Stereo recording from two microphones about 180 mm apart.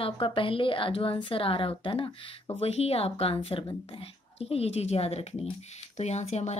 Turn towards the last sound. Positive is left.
turn(degrees=35)  # may be behind; listen again after turning